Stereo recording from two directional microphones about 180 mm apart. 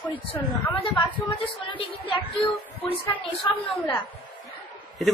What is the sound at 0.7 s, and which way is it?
A woman's voice, 30° left (ahead or behind).